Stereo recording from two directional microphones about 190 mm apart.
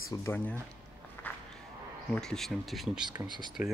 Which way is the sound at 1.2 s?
10° left (ahead or behind).